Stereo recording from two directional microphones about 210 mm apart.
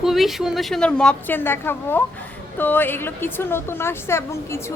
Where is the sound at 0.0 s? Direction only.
Centre (ahead or behind).